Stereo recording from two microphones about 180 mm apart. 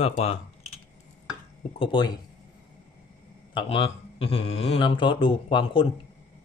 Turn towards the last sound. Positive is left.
turn(degrees=30)  # may be behind; listen again after turning